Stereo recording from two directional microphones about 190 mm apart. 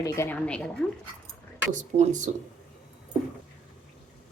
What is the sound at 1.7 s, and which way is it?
Speech, 40° right (ahead or behind).